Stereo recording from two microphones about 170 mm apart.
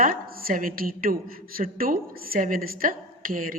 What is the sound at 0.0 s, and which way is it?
A woman's voice, 55° right (ahead or behind).